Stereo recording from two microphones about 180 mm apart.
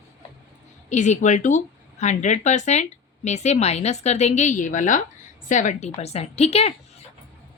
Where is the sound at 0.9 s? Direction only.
40° left (ahead or behind).